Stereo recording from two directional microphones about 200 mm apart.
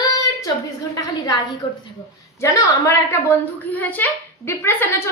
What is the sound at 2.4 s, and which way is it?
A woman's voice, 15° left (ahead or behind).